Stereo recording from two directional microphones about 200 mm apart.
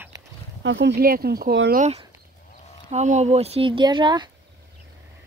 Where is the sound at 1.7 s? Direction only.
35° right (ahead or behind).